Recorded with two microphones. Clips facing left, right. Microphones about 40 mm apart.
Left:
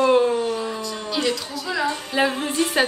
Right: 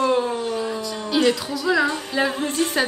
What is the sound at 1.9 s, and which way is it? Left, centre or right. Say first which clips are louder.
Music: left 1 dB; centre.